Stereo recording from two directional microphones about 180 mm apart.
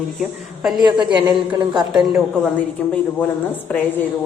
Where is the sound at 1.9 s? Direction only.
5° right (ahead or behind).